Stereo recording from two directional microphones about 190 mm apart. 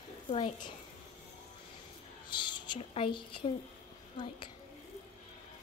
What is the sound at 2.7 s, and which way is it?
Speech, 30° left (ahead or behind).